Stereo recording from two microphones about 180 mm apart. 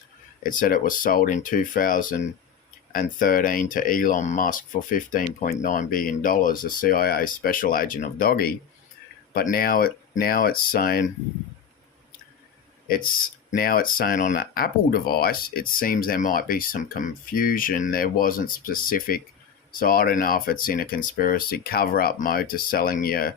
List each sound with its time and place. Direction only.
0.4 s speech: 50° left (ahead or behind)
12.9 s speech: 50° left (ahead or behind)